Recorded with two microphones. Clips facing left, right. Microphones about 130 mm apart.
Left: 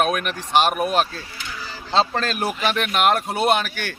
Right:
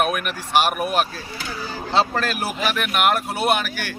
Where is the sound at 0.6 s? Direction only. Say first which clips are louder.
Left 2 dB; 25° left (ahead or behind).